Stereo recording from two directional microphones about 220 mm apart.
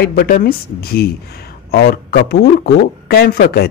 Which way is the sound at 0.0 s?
45° left (ahead or behind).